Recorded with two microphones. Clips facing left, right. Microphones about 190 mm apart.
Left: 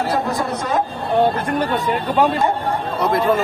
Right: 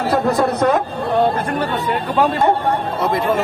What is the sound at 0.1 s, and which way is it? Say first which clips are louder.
Speech: right 4 dB; 65° right (ahead or behind).